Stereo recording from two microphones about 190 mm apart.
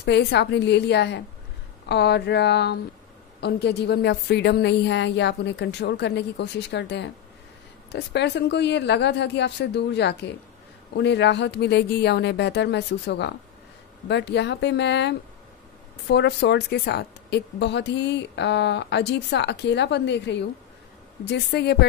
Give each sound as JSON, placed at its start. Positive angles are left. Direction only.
{"t": 0.0, "sound": "a woman's voice", "side_deg": 65}